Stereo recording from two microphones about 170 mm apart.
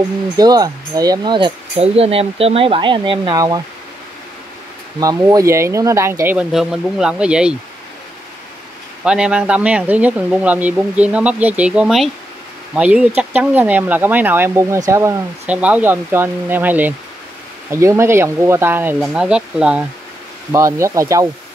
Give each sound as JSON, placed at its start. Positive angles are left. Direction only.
{"t": 0.4, "sound": "speech", "side_deg": -20}
{"t": 5.0, "sound": "speech", "side_deg": -20}
{"t": 9.0, "sound": "speech", "side_deg": -5}
{"t": 20.5, "sound": "speech", "side_deg": -15}